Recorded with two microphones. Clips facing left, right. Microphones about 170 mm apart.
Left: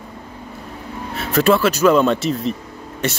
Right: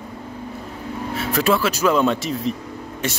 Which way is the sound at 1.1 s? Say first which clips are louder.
Left 4 dB; 10° right (ahead or behind).